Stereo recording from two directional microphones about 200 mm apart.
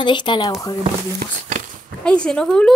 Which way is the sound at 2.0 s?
5° left (ahead or behind).